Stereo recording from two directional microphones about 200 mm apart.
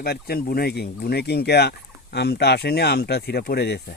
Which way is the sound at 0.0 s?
50° left (ahead or behind).